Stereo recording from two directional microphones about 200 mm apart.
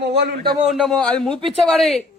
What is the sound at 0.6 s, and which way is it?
A man's voice, centre (ahead or behind).